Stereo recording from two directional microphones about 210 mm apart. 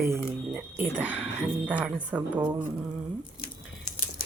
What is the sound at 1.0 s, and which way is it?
A woman's voice, 5° right (ahead or behind).